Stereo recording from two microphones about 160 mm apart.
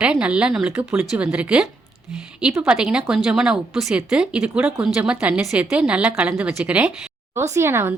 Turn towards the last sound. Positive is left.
turn(degrees=-15)  # may be behind; listen again after turning